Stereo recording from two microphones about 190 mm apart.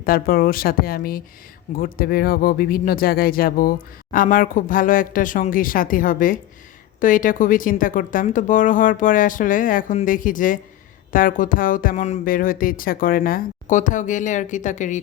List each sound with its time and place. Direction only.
0.0 s speech: 50° left (ahead or behind)